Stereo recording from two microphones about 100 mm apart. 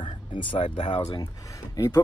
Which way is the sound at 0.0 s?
55° left (ahead or behind).